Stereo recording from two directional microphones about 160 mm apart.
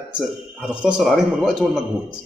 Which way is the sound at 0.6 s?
5° right (ahead or behind).